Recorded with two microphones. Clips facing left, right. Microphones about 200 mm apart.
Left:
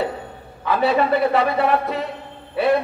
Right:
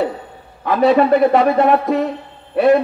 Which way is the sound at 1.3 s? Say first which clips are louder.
Right 5 dB; 45° right (ahead or behind).